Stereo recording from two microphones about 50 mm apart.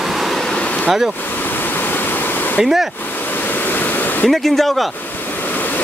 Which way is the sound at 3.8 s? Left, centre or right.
Left.